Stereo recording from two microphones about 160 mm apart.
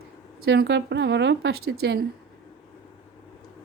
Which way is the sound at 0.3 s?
85° right.